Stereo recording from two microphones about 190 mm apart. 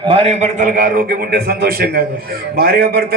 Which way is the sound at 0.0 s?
30° right (ahead or behind).